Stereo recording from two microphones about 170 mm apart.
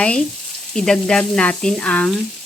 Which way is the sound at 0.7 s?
5° left (ahead or behind).